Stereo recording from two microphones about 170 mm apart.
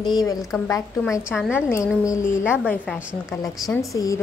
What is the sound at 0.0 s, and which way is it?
Speech, 25° left (ahead or behind).